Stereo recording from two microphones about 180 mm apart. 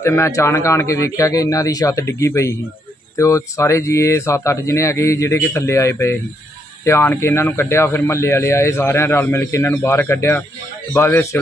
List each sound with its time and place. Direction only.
0.0 s a man's voice: 15° left (ahead or behind)